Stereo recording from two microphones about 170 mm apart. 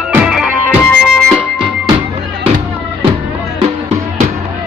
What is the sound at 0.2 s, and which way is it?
Music, 5° right (ahead or behind).